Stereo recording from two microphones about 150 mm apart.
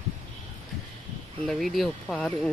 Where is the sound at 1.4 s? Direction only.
Centre (ahead or behind).